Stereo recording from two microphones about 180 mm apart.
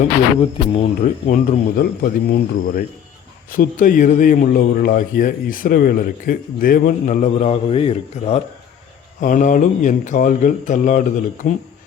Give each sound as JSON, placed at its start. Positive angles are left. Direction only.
{"t": 0.7, "sound": "speech", "side_deg": 35}
{"t": 1.3, "sound": "a man's voice", "side_deg": 55}
{"t": 9.2, "sound": "a man's voice", "side_deg": 45}